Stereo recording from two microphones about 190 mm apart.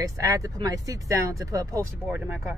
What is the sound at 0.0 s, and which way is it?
Speech, 15° right (ahead or behind).